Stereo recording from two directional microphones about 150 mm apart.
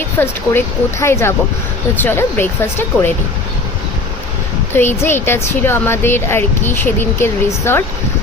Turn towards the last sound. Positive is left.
turn(degrees=15)  # may be behind; listen again after turning